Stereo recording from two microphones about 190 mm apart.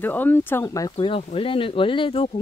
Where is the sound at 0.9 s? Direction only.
30° left (ahead or behind).